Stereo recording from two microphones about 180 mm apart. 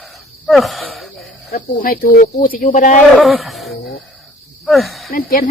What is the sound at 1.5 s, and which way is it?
Speech, 55° left (ahead or behind).